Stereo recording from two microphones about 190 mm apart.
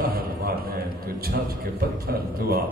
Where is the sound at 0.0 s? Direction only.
50° right (ahead or behind).